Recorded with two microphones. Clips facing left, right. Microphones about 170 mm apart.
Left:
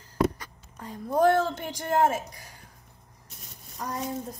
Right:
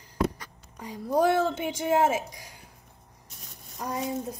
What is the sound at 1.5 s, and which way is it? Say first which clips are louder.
Speech: right 3 dB; 5° right (ahead or behind).